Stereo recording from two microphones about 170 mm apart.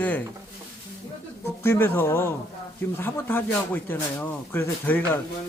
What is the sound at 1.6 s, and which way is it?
Speech, 15° left (ahead or behind).